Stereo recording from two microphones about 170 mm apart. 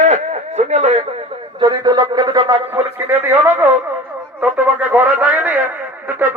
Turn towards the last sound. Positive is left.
turn(degrees=-10)  # may be behind; listen again after turning